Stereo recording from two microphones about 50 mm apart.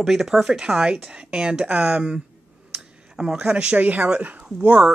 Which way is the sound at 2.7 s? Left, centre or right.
Centre.